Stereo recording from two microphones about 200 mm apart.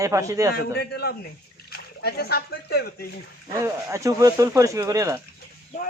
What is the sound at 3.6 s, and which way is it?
Speech, 15° right (ahead or behind).